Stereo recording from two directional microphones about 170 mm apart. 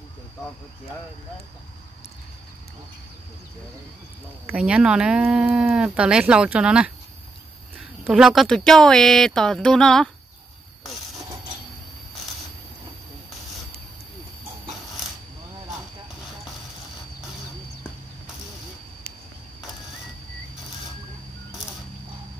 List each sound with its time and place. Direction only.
4.5 s speech: 5° right (ahead or behind)
8.0 s speech: 5° right (ahead or behind)